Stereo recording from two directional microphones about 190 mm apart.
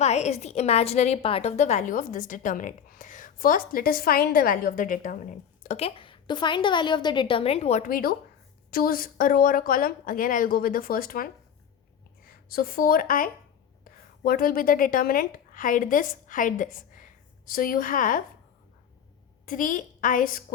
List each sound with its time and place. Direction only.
0.0 s a woman's voice: 35° left (ahead or behind)
5.6 s a woman's voice: 35° left (ahead or behind); by 11.3 s 50° left (ahead or behind)
12.3 s a woman's voice: 50° left (ahead or behind)
19.5 s a woman's voice: 45° left (ahead or behind)